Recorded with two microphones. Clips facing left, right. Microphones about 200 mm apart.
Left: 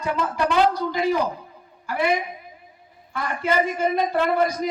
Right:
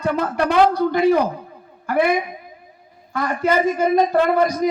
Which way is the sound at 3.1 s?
45° right (ahead or behind).